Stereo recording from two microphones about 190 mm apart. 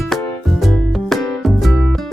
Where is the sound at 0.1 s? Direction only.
Centre (ahead or behind).